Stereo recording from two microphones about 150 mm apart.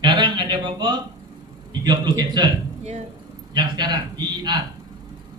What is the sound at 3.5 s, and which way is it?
A man's voice, 30° right (ahead or behind).